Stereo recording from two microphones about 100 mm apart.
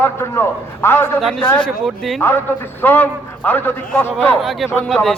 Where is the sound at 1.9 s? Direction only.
Centre (ahead or behind).